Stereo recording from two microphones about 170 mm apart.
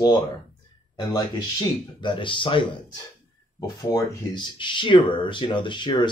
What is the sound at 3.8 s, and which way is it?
Speech, 20° left (ahead or behind).